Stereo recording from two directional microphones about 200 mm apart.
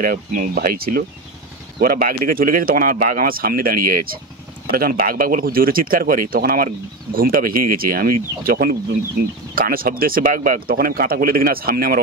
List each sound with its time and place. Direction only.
0.0 s speech: 45° right (ahead or behind)